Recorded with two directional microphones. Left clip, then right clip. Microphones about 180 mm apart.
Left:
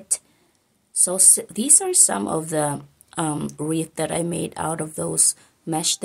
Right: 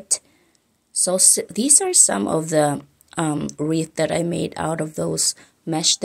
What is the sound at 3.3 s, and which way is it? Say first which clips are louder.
Speech: right 3 dB; 10° right (ahead or behind).